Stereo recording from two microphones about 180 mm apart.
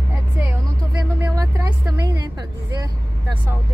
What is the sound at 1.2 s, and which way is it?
Vehicle, 20° right (ahead or behind).